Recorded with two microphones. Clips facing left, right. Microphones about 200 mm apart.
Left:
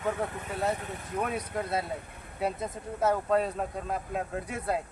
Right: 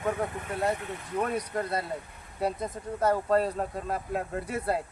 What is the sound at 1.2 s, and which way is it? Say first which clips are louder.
A man's voice: right 2 dB; centre (ahead or behind).